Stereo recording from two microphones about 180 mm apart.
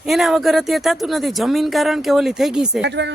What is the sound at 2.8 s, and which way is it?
Speech, 75° right (ahead or behind).